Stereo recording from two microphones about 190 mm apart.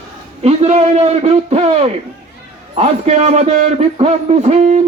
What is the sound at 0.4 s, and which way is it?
A man's voice, 35° right (ahead or behind).